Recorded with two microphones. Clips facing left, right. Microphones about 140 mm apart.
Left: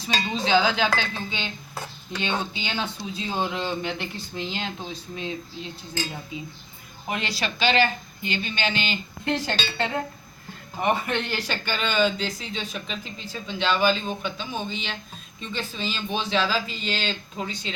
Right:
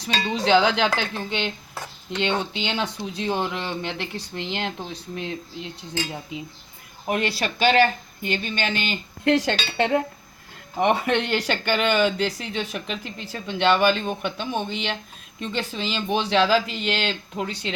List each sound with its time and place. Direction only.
0.0 s dishes: 70° right (ahead or behind)
7.1 s speech: 55° right (ahead or behind)
9.5 s dishes: 65° right (ahead or behind)
10.8 s speech: 75° right (ahead or behind)